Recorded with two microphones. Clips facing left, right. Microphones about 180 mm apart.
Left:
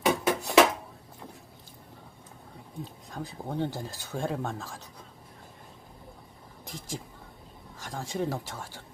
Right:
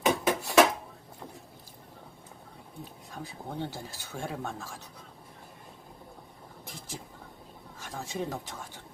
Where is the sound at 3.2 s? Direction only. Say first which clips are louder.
Left 5 dB; 15° left (ahead or behind).